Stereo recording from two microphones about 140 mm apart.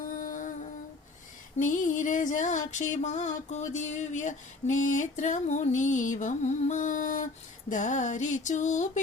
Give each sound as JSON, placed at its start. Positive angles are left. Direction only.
{"t": 0.0, "sound": "music", "side_deg": 75}